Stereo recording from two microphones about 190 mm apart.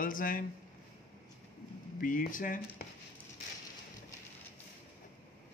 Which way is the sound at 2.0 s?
45° left (ahead or behind).